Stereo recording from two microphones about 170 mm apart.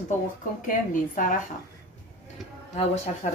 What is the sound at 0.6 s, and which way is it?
Speech, 50° left (ahead or behind).